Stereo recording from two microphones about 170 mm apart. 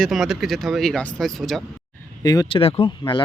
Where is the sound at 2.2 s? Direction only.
20° left (ahead or behind).